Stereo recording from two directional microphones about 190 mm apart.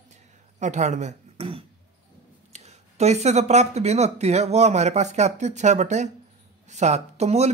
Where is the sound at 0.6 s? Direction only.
40° right (ahead or behind).